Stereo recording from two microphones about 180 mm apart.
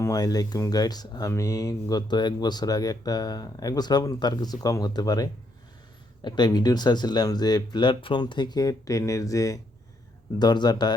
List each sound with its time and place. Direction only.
0.0 s speech: 20° left (ahead or behind)